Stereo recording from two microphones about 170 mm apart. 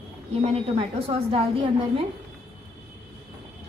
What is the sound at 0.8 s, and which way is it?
Speech, 35° right (ahead or behind).